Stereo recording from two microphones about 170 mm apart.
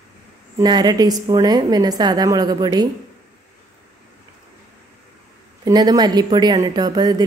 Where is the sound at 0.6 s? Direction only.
25° right (ahead or behind).